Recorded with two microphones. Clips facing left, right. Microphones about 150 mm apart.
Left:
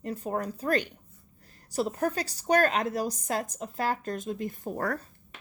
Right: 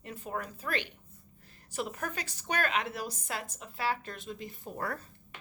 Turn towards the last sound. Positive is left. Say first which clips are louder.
# left 6 dB
turn(degrees=45)  # may be behind; listen again after turning